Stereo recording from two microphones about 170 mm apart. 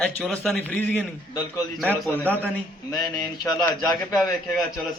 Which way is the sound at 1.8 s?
Centre (ahead or behind).